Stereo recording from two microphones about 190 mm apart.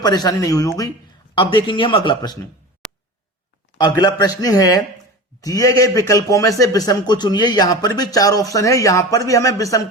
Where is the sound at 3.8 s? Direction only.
20° left (ahead or behind).